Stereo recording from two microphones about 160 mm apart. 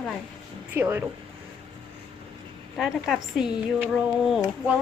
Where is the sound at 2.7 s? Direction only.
Centre (ahead or behind).